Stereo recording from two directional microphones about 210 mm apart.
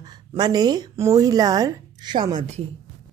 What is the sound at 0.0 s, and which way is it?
A woman's voice, 20° right (ahead or behind).